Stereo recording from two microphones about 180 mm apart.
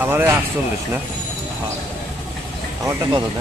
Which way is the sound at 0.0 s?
10° right (ahead or behind).